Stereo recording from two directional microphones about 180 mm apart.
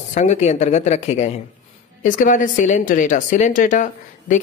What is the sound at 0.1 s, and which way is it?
A woman's voice, 40° left (ahead or behind).